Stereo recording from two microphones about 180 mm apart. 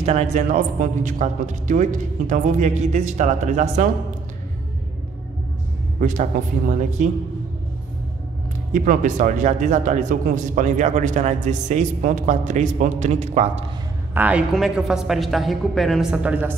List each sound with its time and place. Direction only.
0.0 s a man's voice: 40° right (ahead or behind)
5.9 s a man's voice: 45° right (ahead or behind)
8.7 s a man's voice: 45° right (ahead or behind)
14.1 s speech: 10° right (ahead or behind)